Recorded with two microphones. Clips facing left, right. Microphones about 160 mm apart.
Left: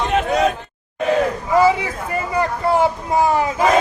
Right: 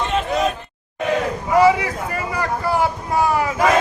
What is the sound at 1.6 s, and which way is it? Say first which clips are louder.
Speech: right 1 dB; 25° left (ahead or behind).